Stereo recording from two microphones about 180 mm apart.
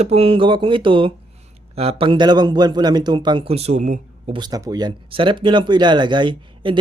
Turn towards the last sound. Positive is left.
turn(degrees=-25)  # may be behind; listen again after turning